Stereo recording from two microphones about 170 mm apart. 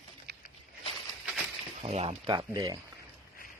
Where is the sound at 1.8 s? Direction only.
35° right (ahead or behind).